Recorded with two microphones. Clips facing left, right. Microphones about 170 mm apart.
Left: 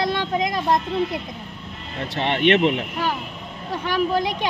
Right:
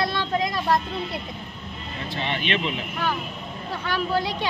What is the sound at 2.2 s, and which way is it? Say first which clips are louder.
Speech: left 9 dB; 65° left (ahead or behind).